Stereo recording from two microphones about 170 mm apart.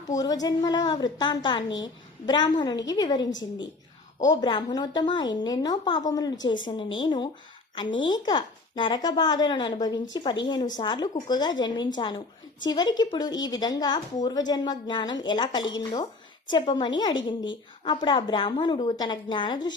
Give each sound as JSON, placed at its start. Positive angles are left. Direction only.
{"t": 0.1, "sound": "a woman's voice", "side_deg": 20}
{"t": 4.3, "sound": "a woman's voice", "side_deg": 25}